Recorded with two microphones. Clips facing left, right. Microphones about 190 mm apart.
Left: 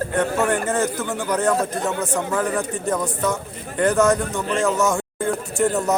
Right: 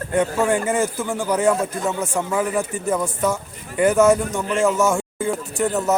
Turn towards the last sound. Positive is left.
turn(degrees=0)  # may be behind; listen again after turning